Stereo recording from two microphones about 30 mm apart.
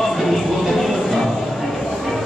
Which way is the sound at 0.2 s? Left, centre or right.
Centre.